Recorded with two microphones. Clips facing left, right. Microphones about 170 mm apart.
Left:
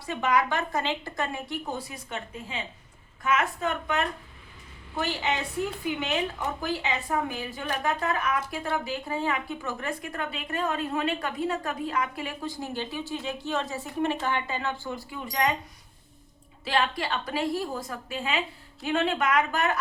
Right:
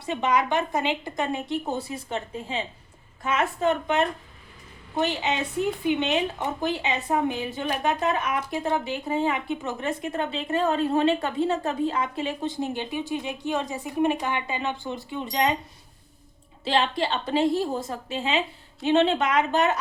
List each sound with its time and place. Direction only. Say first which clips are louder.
0.0 s speech: right 2 dB; 20° right (ahead or behind)
16.6 s speech: right 3 dB; 25° right (ahead or behind)